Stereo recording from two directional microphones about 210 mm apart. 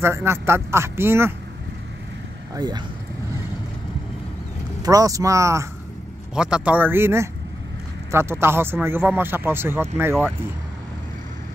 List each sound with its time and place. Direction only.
0.0 s speech: 10° right (ahead or behind)
2.5 s speech: 20° right (ahead or behind)
4.8 s speech: 15° right (ahead or behind)